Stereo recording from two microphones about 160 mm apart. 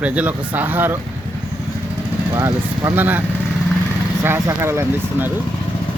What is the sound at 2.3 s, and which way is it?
Speech, 20° right (ahead or behind).